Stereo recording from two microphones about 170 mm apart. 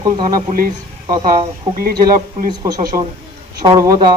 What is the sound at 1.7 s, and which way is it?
Speech, 55° right (ahead or behind).